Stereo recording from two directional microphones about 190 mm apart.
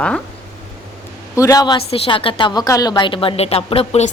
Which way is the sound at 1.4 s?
20° left (ahead or behind).